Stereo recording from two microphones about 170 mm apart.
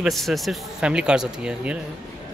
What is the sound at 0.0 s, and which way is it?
Speech, centre (ahead or behind).